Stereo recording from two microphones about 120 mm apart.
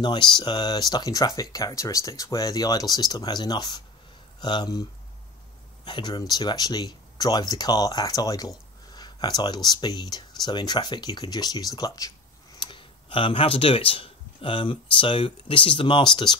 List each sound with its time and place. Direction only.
0.0 s speech: 40° left (ahead or behind)
5.9 s speech: 40° left (ahead or behind)
12.5 s speech: 40° left (ahead or behind)